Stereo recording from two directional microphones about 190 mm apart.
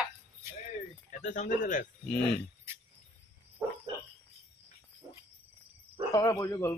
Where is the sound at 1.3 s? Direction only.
40° left (ahead or behind).